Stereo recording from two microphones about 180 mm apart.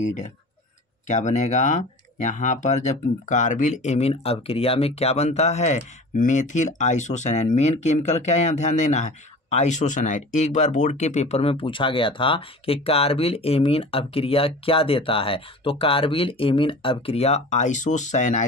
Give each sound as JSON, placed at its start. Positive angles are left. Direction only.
{"t": 1.0, "sound": "speech", "side_deg": 40}